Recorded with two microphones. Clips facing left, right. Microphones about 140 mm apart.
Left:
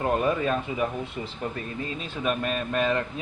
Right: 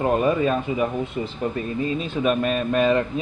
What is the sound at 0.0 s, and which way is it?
Speech, 10° right (ahead or behind).